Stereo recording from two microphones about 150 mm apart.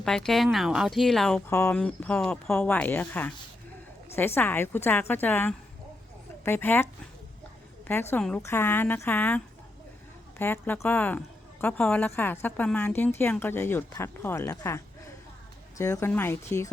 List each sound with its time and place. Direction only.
0.0 s speech: 5° left (ahead or behind)
1.5 s a woman's voice: 15° left (ahead or behind)
1.8 s a woman's voice: 5° left (ahead or behind)
7.9 s a woman's voice: 15° left (ahead or behind)
15.8 s a woman's voice: 15° left (ahead or behind)